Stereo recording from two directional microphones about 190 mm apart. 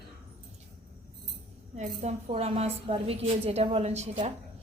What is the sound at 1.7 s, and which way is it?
A woman's voice, 35° right (ahead or behind).